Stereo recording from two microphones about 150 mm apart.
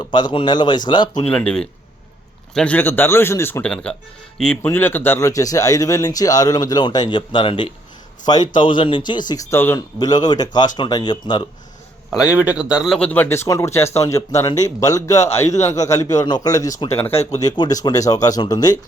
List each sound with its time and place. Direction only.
0.0 s speech: 30° left (ahead or behind)
1.3 s speech: 10° left (ahead or behind)
10.0 s speech: 25° left (ahead or behind)
12.2 s speech: 10° right (ahead or behind)
13.1 s speech: 15° left (ahead or behind)